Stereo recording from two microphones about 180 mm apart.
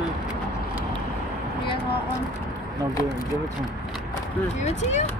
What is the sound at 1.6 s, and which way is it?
Speech, 30° left (ahead or behind).